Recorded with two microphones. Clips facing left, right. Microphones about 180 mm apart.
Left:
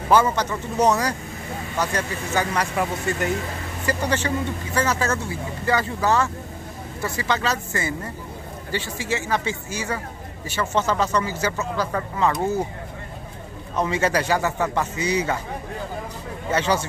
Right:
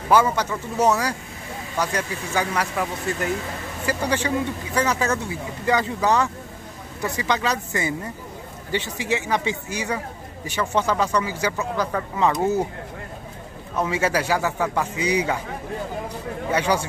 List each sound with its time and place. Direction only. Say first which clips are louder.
0.1 s a man's voice: even; 10° right (ahead or behind)
3.8 s a man's voice: even; 10° right (ahead or behind)
13.7 s a man's voice: left 1 dB; 5° right (ahead or behind)
16.4 s a man's voice: even; 10° right (ahead or behind)